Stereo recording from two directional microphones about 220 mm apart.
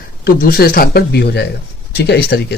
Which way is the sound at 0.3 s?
40° left (ahead or behind).